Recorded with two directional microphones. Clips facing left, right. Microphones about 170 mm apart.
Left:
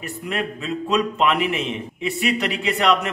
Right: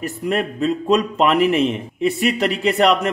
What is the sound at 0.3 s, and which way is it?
A man's voice, 40° right (ahead or behind).